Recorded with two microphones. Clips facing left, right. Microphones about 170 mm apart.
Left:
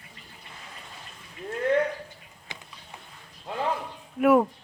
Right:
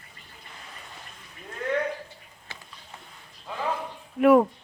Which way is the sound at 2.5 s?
15° left (ahead or behind).